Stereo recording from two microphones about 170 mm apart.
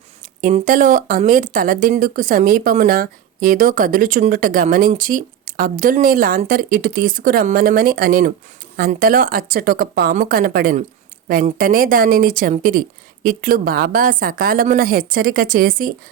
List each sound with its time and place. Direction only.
0.4 s speech: 50° right (ahead or behind)